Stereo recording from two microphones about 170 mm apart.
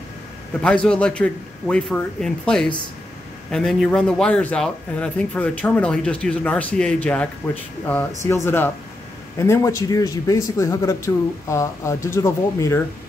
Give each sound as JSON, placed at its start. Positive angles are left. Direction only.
{"t": 0.5, "sound": "a man's voice", "side_deg": 5}
{"t": 8.3, "sound": "a man's voice", "side_deg": 15}